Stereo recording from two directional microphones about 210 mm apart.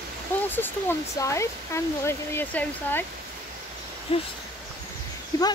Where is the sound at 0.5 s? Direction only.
10° left (ahead or behind).